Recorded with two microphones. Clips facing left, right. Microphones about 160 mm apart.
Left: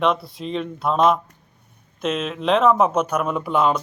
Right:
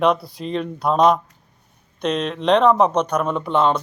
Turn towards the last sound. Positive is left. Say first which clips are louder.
# right 1 dB
turn(degrees=5)  # may be behind; listen again after turning